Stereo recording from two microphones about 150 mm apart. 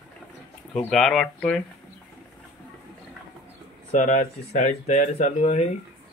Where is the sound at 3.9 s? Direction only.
55° left (ahead or behind).